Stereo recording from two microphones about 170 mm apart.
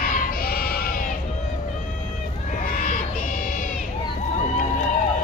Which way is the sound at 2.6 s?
55° left (ahead or behind).